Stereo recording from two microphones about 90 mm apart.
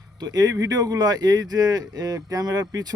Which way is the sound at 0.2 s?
45° right (ahead or behind).